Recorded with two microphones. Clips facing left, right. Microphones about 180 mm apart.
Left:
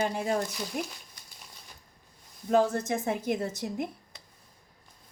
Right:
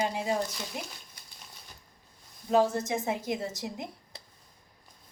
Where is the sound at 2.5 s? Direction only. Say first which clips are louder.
Even; 55° left (ahead or behind).